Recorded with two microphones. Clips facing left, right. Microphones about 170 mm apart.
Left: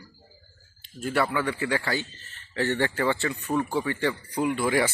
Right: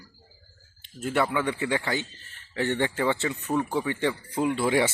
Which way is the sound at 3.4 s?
Centre (ahead or behind).